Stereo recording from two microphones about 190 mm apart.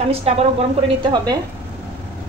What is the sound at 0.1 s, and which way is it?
A woman's voice, 30° right (ahead or behind).